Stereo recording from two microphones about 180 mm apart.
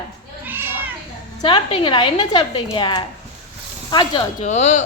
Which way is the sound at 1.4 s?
30° left (ahead or behind).